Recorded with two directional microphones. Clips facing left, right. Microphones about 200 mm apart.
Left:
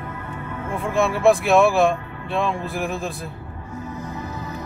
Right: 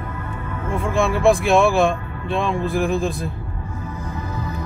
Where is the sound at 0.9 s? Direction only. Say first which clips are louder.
Even; 5° left (ahead or behind).